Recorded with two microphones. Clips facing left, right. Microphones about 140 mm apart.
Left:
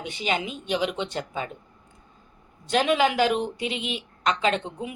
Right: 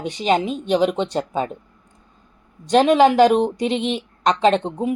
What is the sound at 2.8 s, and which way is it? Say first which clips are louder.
A woman's voice: right 8 dB; 40° right (ahead or behind).